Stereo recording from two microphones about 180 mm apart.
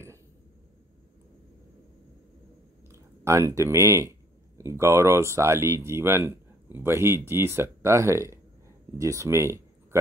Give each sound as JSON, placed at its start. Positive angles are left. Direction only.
{"t": 2.9, "sound": "speech", "side_deg": -15}